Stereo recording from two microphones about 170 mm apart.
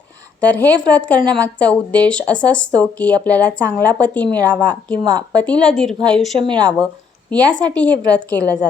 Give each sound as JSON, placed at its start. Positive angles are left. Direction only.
{"t": 0.3, "sound": "speech", "side_deg": 10}
{"t": 5.0, "sound": "speech", "side_deg": -25}
{"t": 5.4, "sound": "a woman's voice", "side_deg": 5}
{"t": 6.4, "sound": "speech", "side_deg": -25}
{"t": 7.3, "sound": "a woman's voice", "side_deg": 10}